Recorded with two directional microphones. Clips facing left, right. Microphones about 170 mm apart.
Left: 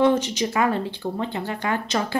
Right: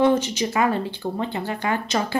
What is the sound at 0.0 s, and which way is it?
Speech, 5° right (ahead or behind).